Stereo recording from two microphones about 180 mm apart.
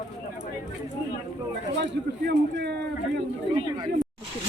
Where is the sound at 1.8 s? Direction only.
65° right (ahead or behind).